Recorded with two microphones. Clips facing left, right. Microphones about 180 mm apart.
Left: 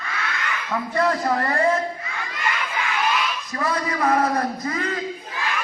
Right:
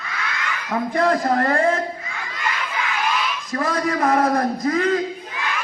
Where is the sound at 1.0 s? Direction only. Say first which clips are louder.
Right 2 dB; 45° right (ahead or behind).